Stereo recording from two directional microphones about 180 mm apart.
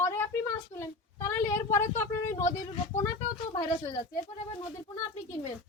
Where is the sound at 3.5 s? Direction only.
20° left (ahead or behind).